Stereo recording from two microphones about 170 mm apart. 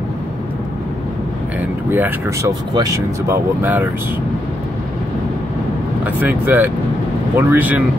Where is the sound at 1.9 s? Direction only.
15° right (ahead or behind).